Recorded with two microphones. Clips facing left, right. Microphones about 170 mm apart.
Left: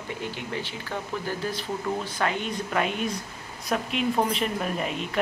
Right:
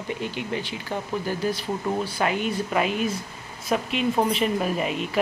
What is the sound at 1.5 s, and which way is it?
Speech, 10° right (ahead or behind).